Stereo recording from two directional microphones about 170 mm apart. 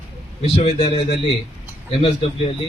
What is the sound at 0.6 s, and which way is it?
Speech, 35° left (ahead or behind).